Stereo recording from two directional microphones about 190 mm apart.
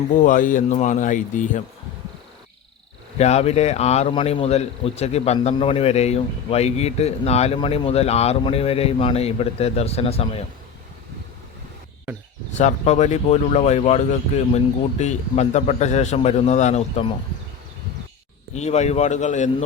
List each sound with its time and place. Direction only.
0.2 s speech: 45° left (ahead or behind)
3.2 s speech: 35° left (ahead or behind)
12.5 s speech: 35° left (ahead or behind)
18.5 s speech: 35° left (ahead or behind)